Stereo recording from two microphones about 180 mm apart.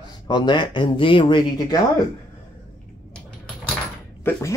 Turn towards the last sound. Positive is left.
turn(degrees=10)  # may be behind; listen again after turning